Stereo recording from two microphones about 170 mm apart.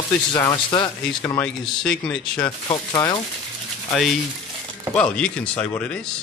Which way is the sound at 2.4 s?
25° left (ahead or behind).